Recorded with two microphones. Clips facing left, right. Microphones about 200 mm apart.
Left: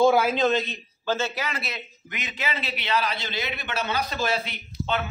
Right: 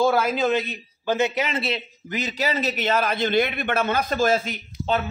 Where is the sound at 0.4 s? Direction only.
10° right (ahead or behind); by 4.6 s 45° right (ahead or behind).